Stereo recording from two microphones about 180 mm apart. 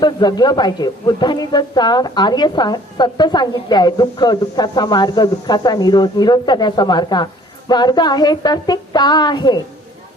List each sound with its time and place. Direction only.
0.0 s speech: 25° left (ahead or behind)